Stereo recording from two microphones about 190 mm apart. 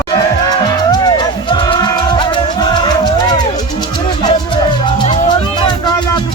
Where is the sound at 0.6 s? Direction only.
20° left (ahead or behind).